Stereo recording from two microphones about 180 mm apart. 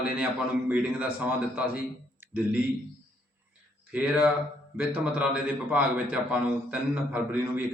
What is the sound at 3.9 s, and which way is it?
Speech, 5° right (ahead or behind).